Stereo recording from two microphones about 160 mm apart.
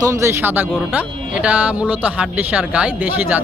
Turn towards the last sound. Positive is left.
turn(degrees=-10)  # may be behind; listen again after turning